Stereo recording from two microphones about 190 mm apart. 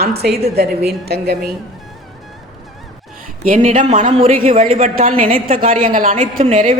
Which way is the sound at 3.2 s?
45° right (ahead or behind).